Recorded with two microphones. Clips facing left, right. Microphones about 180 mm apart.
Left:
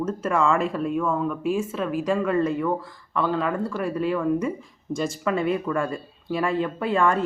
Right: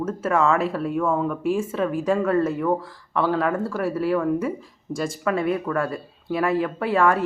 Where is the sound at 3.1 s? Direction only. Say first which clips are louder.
Right 2 dB; 10° right (ahead or behind).